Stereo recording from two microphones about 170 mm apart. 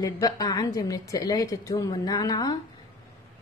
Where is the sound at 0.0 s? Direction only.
20° left (ahead or behind).